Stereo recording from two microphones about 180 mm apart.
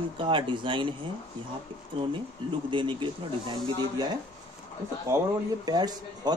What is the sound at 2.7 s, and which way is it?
Speech, 25° right (ahead or behind).